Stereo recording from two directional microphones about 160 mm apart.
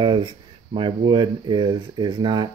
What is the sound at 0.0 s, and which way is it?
Speech, 30° right (ahead or behind).